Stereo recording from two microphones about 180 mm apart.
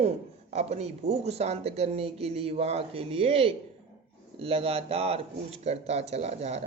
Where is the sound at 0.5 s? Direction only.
35° right (ahead or behind).